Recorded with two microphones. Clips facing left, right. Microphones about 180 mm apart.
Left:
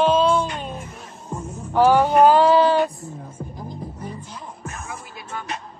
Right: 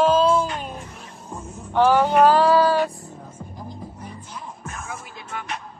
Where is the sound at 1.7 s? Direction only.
10° left (ahead or behind).